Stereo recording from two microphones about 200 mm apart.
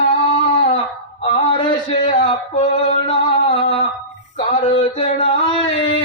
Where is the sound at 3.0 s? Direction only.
25° left (ahead or behind).